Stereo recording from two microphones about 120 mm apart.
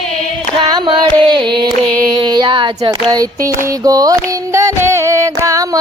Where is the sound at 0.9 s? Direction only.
40° right (ahead or behind).